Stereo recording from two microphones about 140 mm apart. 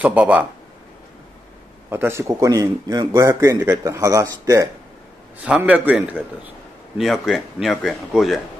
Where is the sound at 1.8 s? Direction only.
15° right (ahead or behind).